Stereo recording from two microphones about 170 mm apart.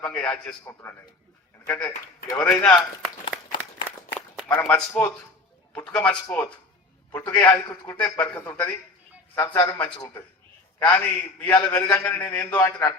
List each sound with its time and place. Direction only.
0.0 s a man's voice: 5° left (ahead or behind)
6.2 s a man's voice: 20° left (ahead or behind)